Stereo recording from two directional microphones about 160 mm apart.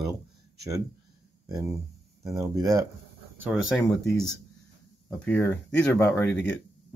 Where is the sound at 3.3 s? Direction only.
5° right (ahead or behind).